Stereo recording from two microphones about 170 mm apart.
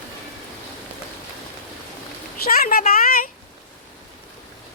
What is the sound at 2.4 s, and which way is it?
Speech, 60° left (ahead or behind).